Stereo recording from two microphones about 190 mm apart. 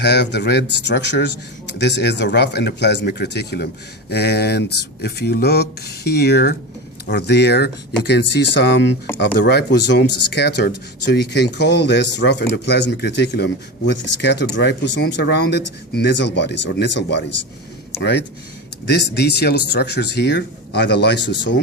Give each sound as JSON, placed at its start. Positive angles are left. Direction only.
{"t": 0.0, "sound": "speech", "side_deg": 65}